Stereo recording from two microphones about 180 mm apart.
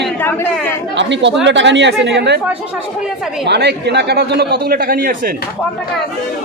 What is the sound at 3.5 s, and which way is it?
A man's voice, 70° right (ahead or behind).